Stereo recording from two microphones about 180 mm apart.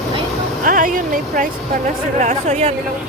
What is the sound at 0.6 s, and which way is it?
Speech, 50° right (ahead or behind).